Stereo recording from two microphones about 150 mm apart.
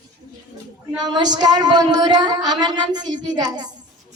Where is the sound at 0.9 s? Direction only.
25° right (ahead or behind).